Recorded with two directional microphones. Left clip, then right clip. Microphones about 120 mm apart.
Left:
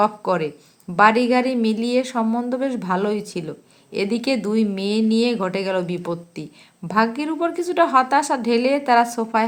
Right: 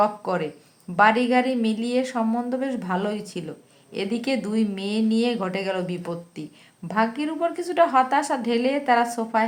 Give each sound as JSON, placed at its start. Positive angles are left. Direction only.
{"t": 0.0, "sound": "a woman's voice", "side_deg": 35}